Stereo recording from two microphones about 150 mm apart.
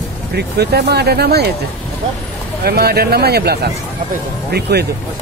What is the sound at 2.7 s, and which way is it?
Speech, 90° right.